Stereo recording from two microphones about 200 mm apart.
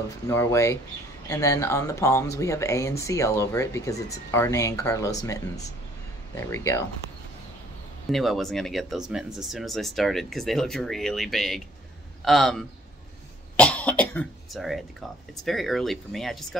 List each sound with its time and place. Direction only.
0.3 s speech: 15° left (ahead or behind)
8.1 s speech: centre (ahead or behind)